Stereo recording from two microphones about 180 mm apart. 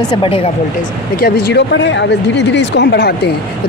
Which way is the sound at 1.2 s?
65° left (ahead or behind).